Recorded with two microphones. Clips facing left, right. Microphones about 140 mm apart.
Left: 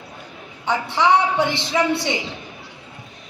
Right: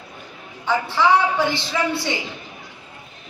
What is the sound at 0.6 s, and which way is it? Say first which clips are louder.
Speech: even; 20° left (ahead or behind).